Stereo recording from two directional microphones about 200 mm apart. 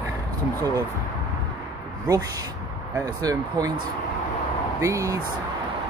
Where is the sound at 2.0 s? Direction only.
15° right (ahead or behind).